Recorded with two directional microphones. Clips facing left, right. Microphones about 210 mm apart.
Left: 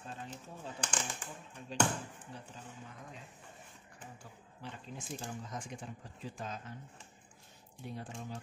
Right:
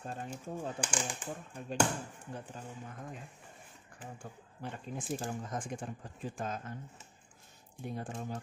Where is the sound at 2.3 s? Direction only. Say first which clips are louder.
Right 5 dB; 50° right (ahead or behind).